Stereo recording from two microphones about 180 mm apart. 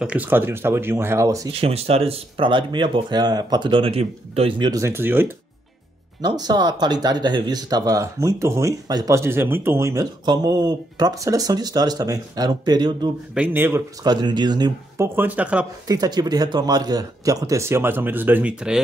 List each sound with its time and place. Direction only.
0.0 s speech: 10° right (ahead or behind)
1.5 s speech: 35° right (ahead or behind); by 5.3 s 10° right (ahead or behind)
6.2 s speech: 20° right (ahead or behind)
13.3 s speech: 10° right (ahead or behind)
15.1 s speech: 10° right (ahead or behind)
15.9 s speech: 20° right (ahead or behind); by 18.8 s 5° right (ahead or behind)